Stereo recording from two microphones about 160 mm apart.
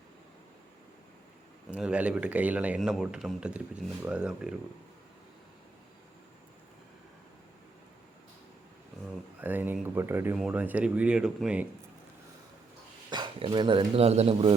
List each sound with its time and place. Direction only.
1.7 s speech: 5° right (ahead or behind)
9.4 s speech: 10° right (ahead or behind)
13.1 s speech: 30° right (ahead or behind)